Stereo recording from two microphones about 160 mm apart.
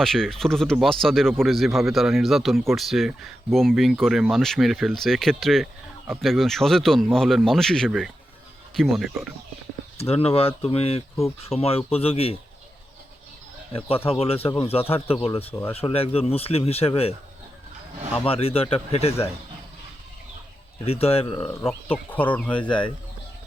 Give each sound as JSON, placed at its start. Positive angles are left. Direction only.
{"t": 0.0, "sound": "speech", "side_deg": 5}
{"t": 10.0, "sound": "speech", "side_deg": 40}
{"t": 13.7, "sound": "speech", "side_deg": 35}
{"t": 18.3, "sound": "speech", "side_deg": 35}
{"t": 20.8, "sound": "speech", "side_deg": 40}
{"t": 22.1, "sound": "speech", "side_deg": 10}